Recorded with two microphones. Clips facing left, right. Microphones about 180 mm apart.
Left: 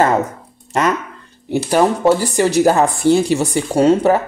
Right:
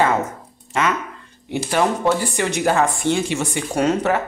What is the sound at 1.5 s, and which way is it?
Speech, 40° left (ahead or behind).